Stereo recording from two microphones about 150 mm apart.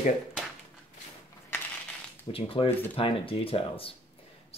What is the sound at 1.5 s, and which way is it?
Crushing, 15° left (ahead or behind).